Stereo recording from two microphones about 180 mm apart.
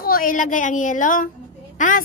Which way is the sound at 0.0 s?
50° left (ahead or behind).